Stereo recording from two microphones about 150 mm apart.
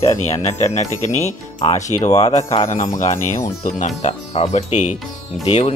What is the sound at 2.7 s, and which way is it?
Speech, 60° left (ahead or behind).